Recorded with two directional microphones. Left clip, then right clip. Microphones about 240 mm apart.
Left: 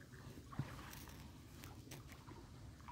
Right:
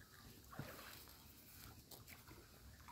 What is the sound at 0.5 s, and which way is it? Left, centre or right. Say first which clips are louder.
Boat: left 2 dB; left.